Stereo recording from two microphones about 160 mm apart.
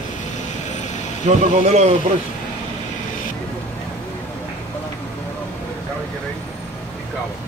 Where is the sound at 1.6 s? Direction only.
40° right (ahead or behind).